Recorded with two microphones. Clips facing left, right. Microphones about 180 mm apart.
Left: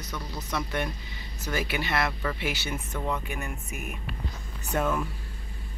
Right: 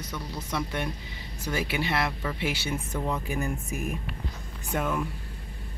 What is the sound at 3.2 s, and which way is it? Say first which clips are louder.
Speech: right 5 dB; 30° right (ahead or behind).